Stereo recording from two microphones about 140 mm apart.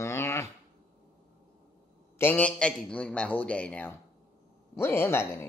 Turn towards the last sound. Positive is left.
turn(degrees=15)  # may be behind; listen again after turning